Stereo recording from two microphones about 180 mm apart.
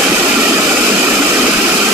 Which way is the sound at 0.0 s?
10° right (ahead or behind).